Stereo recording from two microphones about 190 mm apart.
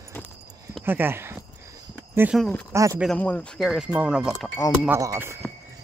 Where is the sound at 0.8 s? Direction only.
10° right (ahead or behind).